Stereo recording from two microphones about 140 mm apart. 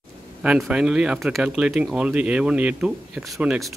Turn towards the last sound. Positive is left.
turn(degrees=-5)  # may be behind; listen again after turning